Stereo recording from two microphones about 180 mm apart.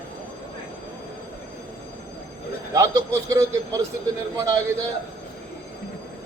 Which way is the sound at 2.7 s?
15° right (ahead or behind).